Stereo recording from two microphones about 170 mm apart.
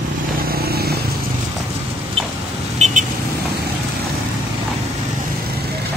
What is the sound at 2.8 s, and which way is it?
Vehicle, 45° right (ahead or behind).